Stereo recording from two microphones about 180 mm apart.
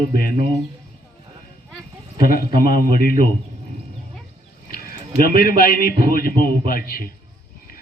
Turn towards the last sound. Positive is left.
turn(degrees=55)  # may be behind; listen again after turning